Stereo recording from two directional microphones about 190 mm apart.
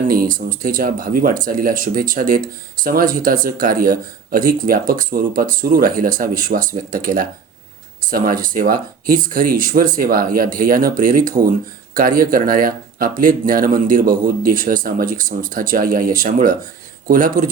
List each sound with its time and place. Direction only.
0.1 s speech: 45° right (ahead or behind)